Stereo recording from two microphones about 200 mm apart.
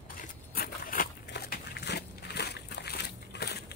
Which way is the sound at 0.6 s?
45° left (ahead or behind).